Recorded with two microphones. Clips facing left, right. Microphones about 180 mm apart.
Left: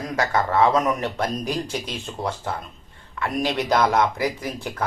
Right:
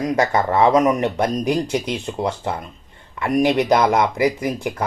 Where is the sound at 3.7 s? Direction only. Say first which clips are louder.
Right 3 dB; 15° right (ahead or behind).